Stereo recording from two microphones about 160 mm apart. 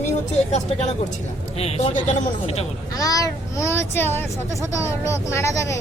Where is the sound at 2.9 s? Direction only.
20° left (ahead or behind).